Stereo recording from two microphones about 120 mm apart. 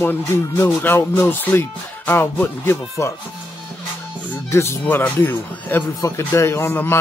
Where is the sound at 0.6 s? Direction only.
20° left (ahead or behind).